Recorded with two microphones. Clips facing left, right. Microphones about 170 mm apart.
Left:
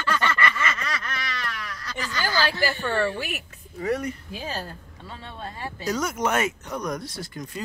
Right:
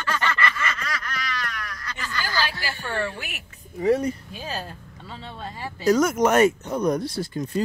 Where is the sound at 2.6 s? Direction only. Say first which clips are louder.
Left 5 dB; 35° left (ahead or behind).